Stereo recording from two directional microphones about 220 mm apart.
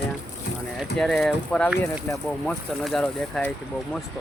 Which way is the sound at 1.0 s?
Centre (ahead or behind).